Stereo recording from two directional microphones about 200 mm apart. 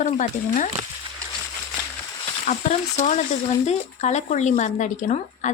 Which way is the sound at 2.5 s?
35° left (ahead or behind).